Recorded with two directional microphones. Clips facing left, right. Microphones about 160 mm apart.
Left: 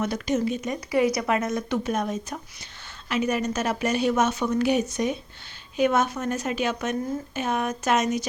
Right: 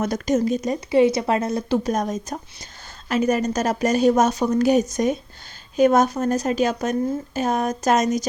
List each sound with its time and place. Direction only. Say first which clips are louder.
0.0 s speech: right 4 dB; 40° right (ahead or behind)